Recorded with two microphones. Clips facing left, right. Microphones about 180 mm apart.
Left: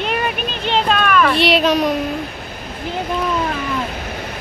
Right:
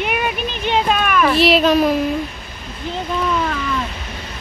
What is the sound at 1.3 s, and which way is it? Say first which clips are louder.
Speech: right 1 dB; centre (ahead or behind).